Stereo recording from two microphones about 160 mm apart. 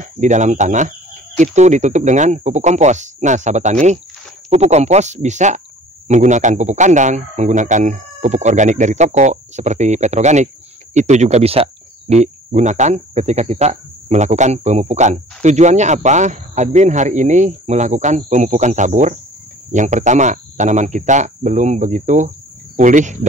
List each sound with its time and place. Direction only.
0.0 s a man's voice: 50° right (ahead or behind)